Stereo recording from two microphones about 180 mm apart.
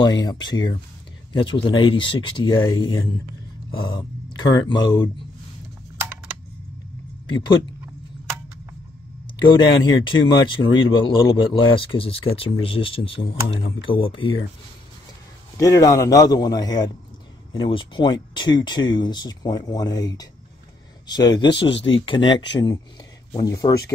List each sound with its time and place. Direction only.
0.0 s speech: 25° left (ahead or behind)
7.2 s speech: 25° left (ahead or behind)
9.4 s speech: 25° left (ahead or behind)
15.5 s speech: 20° left (ahead or behind)